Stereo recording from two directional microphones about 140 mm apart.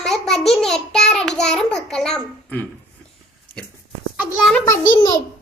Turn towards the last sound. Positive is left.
turn(degrees=20)  # may be behind; listen again after turning